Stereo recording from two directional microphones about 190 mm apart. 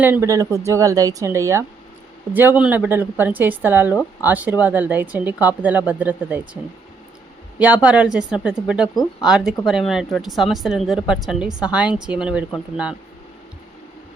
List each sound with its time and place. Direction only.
0.0 s speech: 15° right (ahead or behind)
7.6 s a woman's voice: 5° right (ahead or behind)